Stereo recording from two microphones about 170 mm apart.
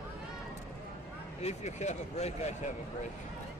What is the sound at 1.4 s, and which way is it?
Speech, 40° left (ahead or behind).